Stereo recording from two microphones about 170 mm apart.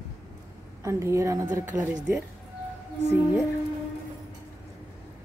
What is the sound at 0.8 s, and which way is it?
A woman's voice, 15° right (ahead or behind).